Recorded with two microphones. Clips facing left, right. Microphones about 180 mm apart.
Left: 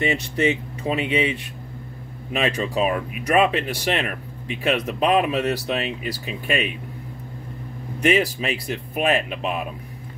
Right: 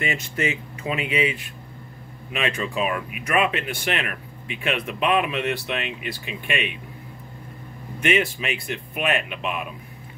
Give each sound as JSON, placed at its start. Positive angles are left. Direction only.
{"t": 0.0, "sound": "speech", "side_deg": 35}
{"t": 8.0, "sound": "speech", "side_deg": 35}